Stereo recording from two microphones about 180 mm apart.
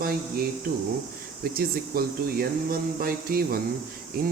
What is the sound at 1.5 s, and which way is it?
Speech, 55° right (ahead or behind).